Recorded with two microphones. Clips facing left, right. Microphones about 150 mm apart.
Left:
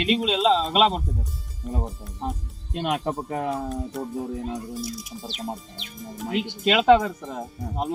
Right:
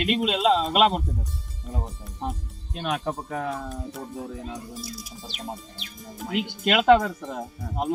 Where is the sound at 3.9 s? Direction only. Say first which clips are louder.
Left 6 dB; centre (ahead or behind).